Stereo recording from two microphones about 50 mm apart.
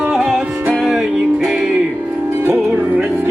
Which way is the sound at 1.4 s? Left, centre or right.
Centre.